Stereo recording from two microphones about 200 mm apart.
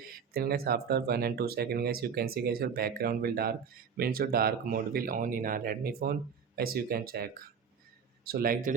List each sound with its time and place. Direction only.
0.1 s speech: 50° right (ahead or behind)